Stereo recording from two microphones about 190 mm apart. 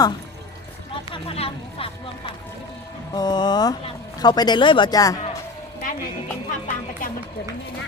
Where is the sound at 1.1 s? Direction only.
30° left (ahead or behind).